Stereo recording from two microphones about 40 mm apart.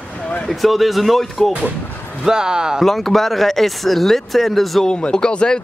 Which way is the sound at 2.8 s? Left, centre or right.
Centre.